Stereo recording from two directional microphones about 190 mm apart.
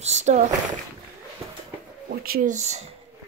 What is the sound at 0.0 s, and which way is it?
Speech, 35° right (ahead or behind).